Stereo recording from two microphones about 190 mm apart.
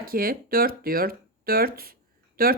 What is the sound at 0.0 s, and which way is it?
A woman's voice, 50° right (ahead or behind).